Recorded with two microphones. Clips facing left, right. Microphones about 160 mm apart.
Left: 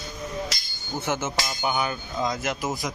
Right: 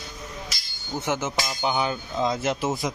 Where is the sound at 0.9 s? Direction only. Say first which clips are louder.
Right 1 dB; 15° right (ahead or behind).